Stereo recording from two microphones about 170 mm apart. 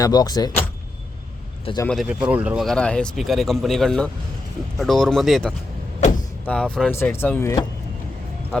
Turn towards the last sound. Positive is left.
turn(degrees=20)  # may be behind; listen again after turning